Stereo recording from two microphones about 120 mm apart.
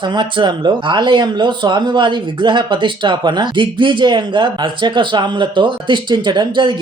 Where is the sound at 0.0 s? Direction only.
40° right (ahead or behind).